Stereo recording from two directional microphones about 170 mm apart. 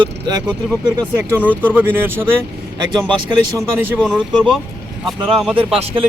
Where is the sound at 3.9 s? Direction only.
Centre (ahead or behind).